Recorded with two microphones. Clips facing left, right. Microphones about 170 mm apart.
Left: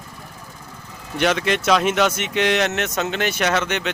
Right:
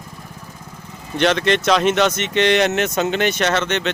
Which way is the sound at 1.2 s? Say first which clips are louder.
Right 3 dB; 5° left (ahead or behind).